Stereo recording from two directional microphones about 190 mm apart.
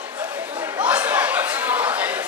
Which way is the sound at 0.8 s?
5° right (ahead or behind).